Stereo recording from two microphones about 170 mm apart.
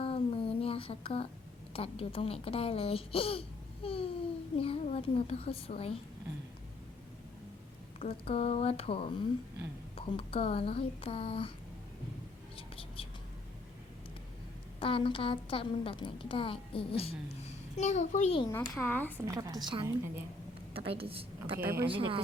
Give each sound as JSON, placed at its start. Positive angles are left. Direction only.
{"t": 0.0, "sound": "a sound", "side_deg": 35}
{"t": 1.7, "sound": "a woman's voice", "side_deg": 35}
{"t": 3.8, "sound": "babbling", "side_deg": 35}
{"t": 4.5, "sound": "a woman's voice", "side_deg": 30}
{"t": 8.0, "sound": "a woman's voice", "side_deg": 35}
{"t": 10.1, "sound": "a woman's voice", "side_deg": 30}
{"t": 12.5, "sound": "whispering", "side_deg": 35}
{"t": 14.8, "sound": "a woman's voice", "side_deg": 30}
{"t": 18.6, "sound": "speech", "side_deg": 15}
{"t": 19.2, "sound": "a woman's voice", "side_deg": -20}
{"t": 21.6, "sound": "speech", "side_deg": -15}
{"t": 21.8, "sound": "speech", "side_deg": -30}